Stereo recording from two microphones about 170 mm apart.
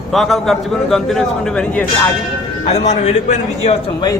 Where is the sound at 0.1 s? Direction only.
Centre (ahead or behind).